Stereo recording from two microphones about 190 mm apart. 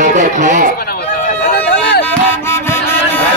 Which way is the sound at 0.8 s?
55° left (ahead or behind).